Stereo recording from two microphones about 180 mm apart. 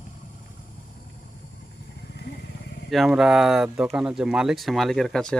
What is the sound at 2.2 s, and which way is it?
Vehicle, 70° left (ahead or behind).